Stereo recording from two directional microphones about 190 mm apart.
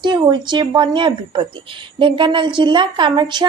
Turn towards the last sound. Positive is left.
turn(degrees=-25)  # may be behind; listen again after turning